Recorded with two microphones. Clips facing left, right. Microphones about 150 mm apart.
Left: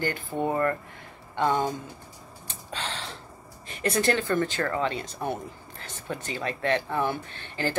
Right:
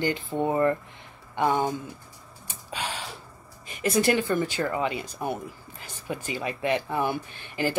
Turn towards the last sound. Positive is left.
turn(degrees=-10)  # may be behind; listen again after turning